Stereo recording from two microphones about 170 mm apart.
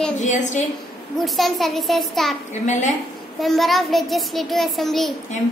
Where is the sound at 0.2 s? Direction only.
45° left (ahead or behind).